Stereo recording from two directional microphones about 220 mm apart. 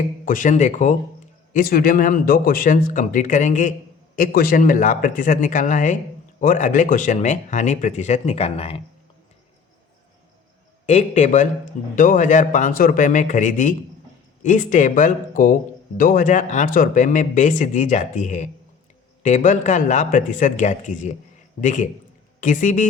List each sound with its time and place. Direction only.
0.3 s speech: 35° left (ahead or behind)
10.8 s speech: 30° left (ahead or behind)